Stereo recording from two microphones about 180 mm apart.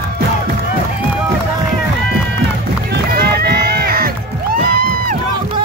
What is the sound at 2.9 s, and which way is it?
Music, 60° right (ahead or behind).